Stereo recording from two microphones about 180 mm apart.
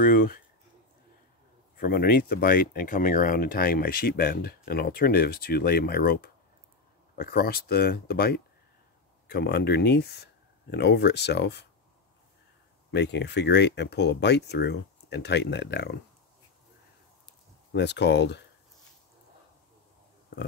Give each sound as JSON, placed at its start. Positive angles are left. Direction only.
{"t": 0.0, "sound": "speech", "side_deg": 50}
{"t": 1.8, "sound": "speech", "side_deg": 55}
{"t": 12.9, "sound": "speech", "side_deg": 70}
{"t": 17.7, "sound": "speech", "side_deg": 70}